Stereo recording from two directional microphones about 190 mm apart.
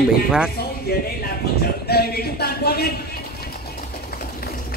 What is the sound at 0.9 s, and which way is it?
Speech, 55° left (ahead or behind).